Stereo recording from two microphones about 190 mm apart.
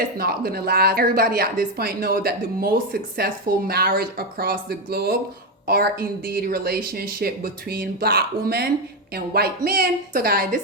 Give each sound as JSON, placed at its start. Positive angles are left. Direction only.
{"t": 0.2, "sound": "speech", "side_deg": -55}